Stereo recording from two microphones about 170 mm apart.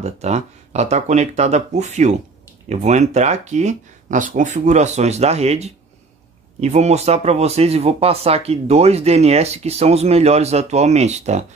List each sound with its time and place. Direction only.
0.0 s speech: 40° right (ahead or behind)